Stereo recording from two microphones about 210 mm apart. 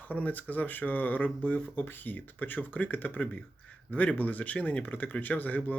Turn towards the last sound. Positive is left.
turn(degrees=10)  # may be behind; listen again after turning